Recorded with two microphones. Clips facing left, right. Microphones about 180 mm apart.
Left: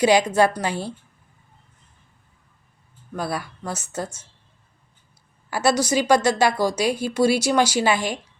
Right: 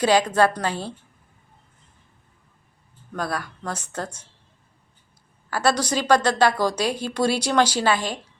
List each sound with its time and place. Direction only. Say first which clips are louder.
0.0 s a woman's voice: left 1 dB; 10° left (ahead or behind)
3.1 s a woman's voice: left 1 dB; 10° left (ahead or behind)
5.5 s a woman's voice: left 2 dB; 10° left (ahead or behind)